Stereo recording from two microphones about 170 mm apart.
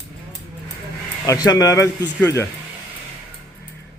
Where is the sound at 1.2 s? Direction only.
20° left (ahead or behind).